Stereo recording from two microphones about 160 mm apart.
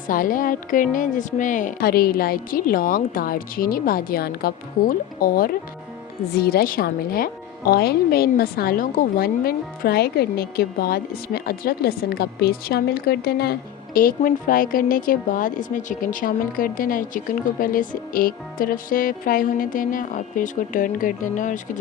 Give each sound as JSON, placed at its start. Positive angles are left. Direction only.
{"t": 0.1, "sound": "a woman's voice", "side_deg": 60}